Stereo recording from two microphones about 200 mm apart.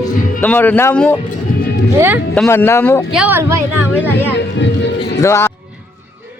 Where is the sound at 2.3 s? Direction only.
5° left (ahead or behind).